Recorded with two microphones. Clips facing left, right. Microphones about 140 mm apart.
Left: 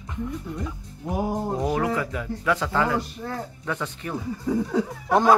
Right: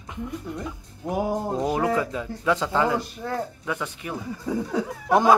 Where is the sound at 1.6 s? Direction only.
20° right (ahead or behind).